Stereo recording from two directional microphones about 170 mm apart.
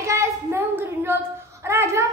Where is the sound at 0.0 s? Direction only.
15° right (ahead or behind).